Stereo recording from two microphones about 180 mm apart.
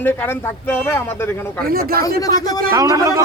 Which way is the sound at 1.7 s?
55° right (ahead or behind).